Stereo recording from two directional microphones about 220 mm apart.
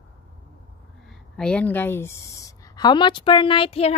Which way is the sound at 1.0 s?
Centre (ahead or behind).